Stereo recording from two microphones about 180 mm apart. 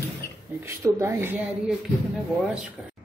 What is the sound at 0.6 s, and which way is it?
A woman's voice, 15° right (ahead or behind).